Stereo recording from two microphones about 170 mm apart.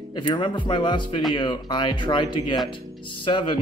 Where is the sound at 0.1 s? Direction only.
30° left (ahead or behind).